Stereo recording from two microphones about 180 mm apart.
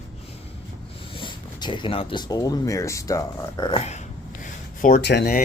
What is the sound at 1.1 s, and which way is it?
Speech, 25° left (ahead or behind).